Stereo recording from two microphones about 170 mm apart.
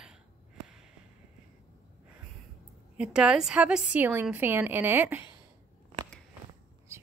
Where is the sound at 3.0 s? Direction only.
5° right (ahead or behind).